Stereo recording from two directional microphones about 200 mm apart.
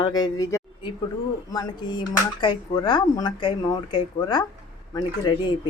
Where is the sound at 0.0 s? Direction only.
20° left (ahead or behind).